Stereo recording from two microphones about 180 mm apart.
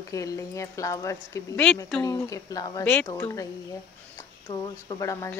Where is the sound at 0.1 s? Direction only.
20° left (ahead or behind).